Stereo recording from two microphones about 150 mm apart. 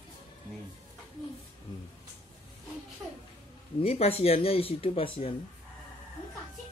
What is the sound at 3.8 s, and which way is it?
Speech, 40° left (ahead or behind).